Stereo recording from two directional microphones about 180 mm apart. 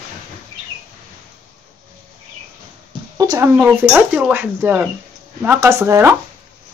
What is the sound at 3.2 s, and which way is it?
Speech, 15° right (ahead or behind).